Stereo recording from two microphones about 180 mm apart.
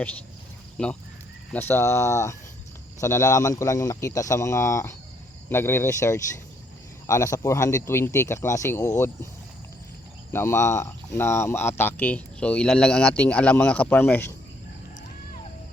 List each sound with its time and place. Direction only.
1.5 s speech: 15° left (ahead or behind)
10.3 s speech: 15° left (ahead or behind)